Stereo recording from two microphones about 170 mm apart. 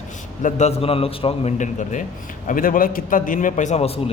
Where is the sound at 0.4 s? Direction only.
40° left (ahead or behind).